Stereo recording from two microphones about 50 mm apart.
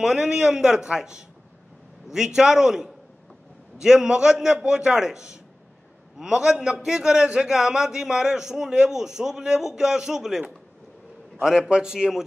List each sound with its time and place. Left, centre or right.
0.0 s a man's voice: centre
11.4 s a man's voice: centre